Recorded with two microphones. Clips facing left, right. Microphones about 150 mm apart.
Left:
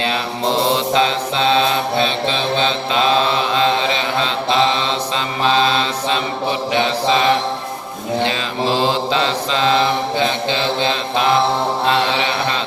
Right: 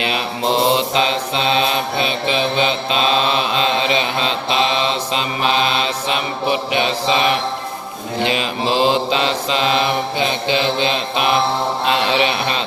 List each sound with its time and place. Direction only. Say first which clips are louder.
0.0 s mantra: left 1 dB; 20° right (ahead or behind)